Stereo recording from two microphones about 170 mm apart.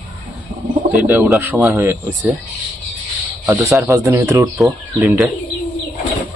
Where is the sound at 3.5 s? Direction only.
15° right (ahead or behind).